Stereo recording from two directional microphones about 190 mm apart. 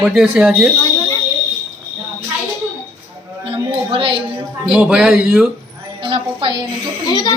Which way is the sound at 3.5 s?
30° right (ahead or behind).